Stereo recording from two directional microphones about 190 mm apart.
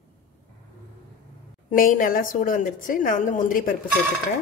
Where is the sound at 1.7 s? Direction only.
45° left (ahead or behind).